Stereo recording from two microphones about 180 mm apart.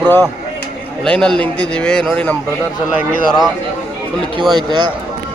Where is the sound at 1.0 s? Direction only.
5° left (ahead or behind).